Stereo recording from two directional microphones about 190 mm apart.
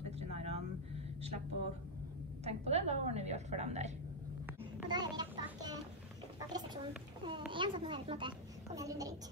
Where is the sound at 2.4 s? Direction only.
35° right (ahead or behind).